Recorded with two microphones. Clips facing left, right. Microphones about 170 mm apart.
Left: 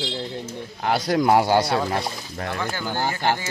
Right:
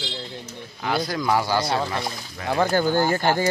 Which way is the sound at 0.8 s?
55° left (ahead or behind).